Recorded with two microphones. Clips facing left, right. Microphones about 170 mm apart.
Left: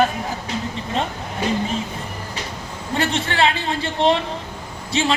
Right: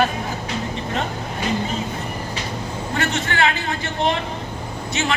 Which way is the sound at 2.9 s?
30° left (ahead or behind).